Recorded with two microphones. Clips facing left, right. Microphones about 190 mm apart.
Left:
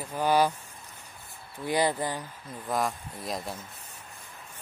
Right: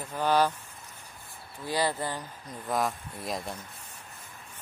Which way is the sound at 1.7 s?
20° left (ahead or behind).